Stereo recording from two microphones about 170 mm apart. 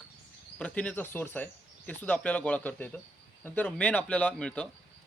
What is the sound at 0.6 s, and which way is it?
A man's voice, 5° left (ahead or behind).